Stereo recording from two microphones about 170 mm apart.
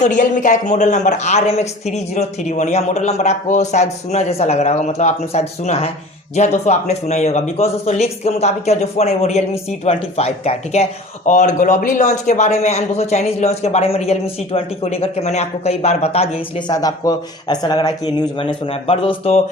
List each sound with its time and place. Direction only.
0.0 s speech: 45° left (ahead or behind)